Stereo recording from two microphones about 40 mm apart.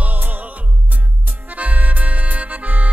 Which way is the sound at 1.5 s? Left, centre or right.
Right.